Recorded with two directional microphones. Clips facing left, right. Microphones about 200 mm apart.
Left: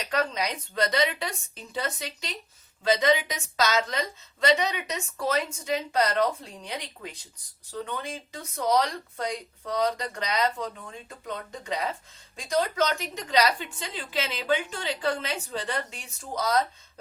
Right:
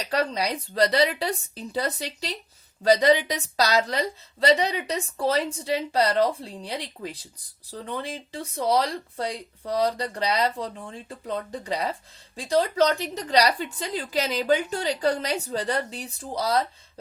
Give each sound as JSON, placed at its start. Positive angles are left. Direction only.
{"t": 0.0, "sound": "a woman's voice", "side_deg": -35}